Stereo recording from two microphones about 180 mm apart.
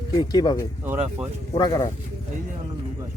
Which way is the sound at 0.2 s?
20° left (ahead or behind).